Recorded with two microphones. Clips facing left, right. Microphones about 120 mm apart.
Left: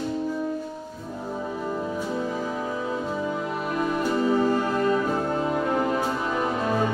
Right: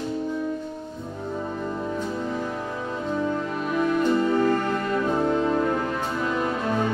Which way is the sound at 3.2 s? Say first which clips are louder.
Right 2 dB; 10° left (ahead or behind).